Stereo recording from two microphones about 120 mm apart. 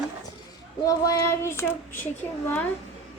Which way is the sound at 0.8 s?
25° left (ahead or behind).